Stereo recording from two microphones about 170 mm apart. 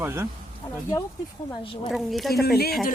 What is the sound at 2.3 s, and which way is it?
Speech, 65° left (ahead or behind).